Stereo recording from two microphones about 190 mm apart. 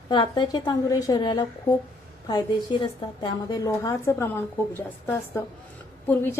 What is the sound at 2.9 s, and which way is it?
A woman's voice, 25° left (ahead or behind).